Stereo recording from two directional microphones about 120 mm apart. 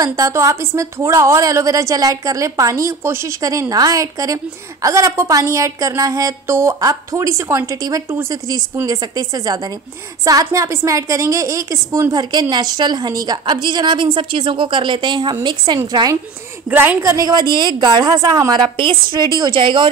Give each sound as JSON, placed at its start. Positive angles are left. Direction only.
{"t": 0.0, "sound": "a woman's voice", "side_deg": -25}
{"t": 16.6, "sound": "a woman's voice", "side_deg": -15}
{"t": 17.2, "sound": "a woman's voice", "side_deg": -35}